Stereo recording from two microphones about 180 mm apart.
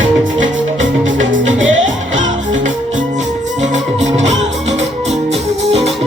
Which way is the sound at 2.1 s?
45° right (ahead or behind).